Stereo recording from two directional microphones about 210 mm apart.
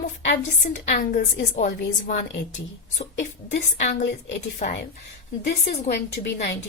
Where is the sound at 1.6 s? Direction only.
35° left (ahead or behind).